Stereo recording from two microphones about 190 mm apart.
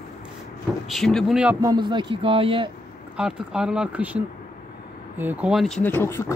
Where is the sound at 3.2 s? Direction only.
5° right (ahead or behind).